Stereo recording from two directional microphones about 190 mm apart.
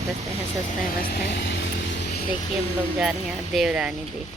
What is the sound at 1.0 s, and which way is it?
Vehicle, 60° left (ahead or behind).